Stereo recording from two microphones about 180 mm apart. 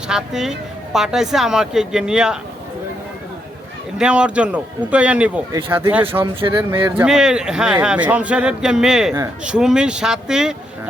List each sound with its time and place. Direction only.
0.1 s speech: 5° right (ahead or behind)
3.9 s a man's voice: 5° right (ahead or behind)
6.4 s speech: 30° right (ahead or behind)
6.9 s speech: 5° right (ahead or behind)